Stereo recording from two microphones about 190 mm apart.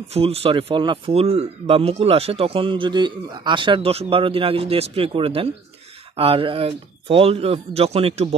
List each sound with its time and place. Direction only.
0.1 s speech: 30° right (ahead or behind)